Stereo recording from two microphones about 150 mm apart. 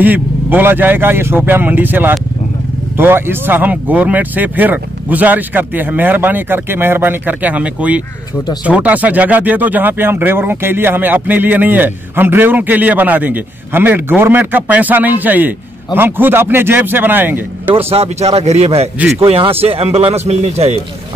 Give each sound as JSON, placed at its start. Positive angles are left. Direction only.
{"t": 0.0, "sound": "speech", "side_deg": -10}
{"t": 17.7, "sound": "speech", "side_deg": -40}